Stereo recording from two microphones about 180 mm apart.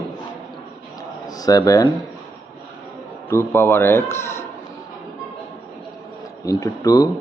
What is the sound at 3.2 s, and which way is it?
A man's voice, 15° left (ahead or behind).